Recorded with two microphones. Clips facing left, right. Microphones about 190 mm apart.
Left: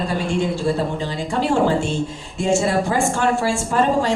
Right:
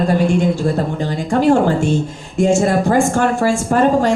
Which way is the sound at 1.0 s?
45° right (ahead or behind).